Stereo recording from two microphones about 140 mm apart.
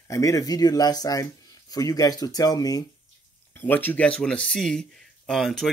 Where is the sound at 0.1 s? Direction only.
25° left (ahead or behind).